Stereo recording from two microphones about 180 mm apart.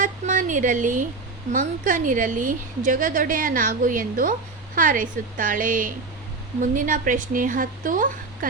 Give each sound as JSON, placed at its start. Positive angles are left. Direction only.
{"t": 0.0, "sound": "a woman's voice", "side_deg": -45}